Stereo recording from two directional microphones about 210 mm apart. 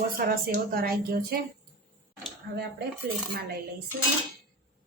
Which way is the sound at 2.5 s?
50° right (ahead or behind).